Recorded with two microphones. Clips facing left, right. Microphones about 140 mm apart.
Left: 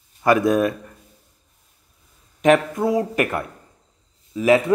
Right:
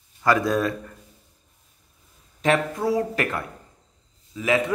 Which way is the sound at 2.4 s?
20° left (ahead or behind).